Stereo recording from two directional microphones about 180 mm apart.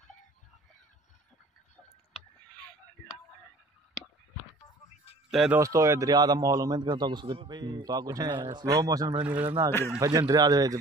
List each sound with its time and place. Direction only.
5.3 s speech: centre (ahead or behind)
5.6 s a man's voice: 15° right (ahead or behind)
9.3 s a man's voice: 10° right (ahead or behind)